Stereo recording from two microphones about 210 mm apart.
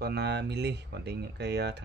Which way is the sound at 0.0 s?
55° right (ahead or behind).